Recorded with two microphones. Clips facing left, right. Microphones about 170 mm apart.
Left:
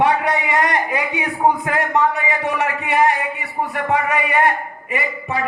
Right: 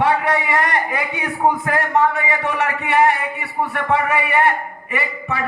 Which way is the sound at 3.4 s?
15° left (ahead or behind).